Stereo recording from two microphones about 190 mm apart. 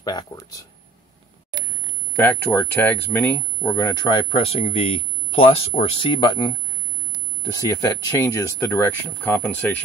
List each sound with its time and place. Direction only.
2.1 s speech: 10° left (ahead or behind)